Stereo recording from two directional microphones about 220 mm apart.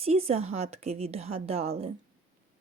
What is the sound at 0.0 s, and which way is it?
A woman's voice, 25° right (ahead or behind).